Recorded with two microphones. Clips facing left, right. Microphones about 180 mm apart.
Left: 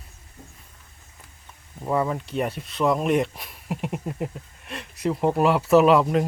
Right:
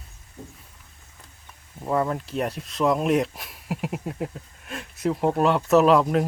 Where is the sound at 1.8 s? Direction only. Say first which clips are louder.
Even; centre (ahead or behind).